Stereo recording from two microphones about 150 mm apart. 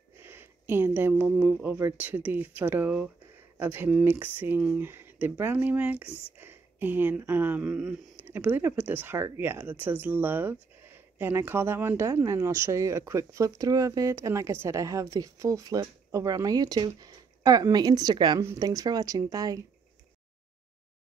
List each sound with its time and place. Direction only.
0.2 s speech: 15° right (ahead or behind)